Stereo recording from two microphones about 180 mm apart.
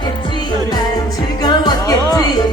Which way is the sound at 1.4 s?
20° left (ahead or behind).